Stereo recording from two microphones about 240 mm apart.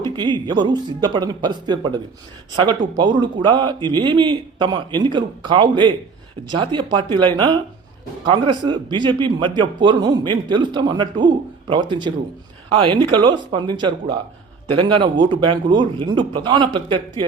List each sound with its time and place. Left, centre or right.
0.2 s speech: centre
3.0 s a man's voice: centre